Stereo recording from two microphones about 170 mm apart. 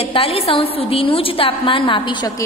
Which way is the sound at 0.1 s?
35° left (ahead or behind).